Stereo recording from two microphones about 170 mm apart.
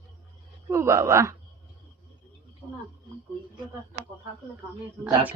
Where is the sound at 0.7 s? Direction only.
15° right (ahead or behind).